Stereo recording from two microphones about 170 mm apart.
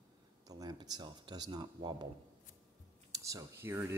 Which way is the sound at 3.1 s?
20° right (ahead or behind).